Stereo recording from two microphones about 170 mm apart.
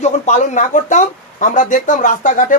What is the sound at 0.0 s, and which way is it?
Speech, 45° left (ahead or behind).